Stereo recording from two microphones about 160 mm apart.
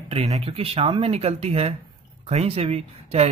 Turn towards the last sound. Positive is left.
turn(degrees=-40)  # may be behind; listen again after turning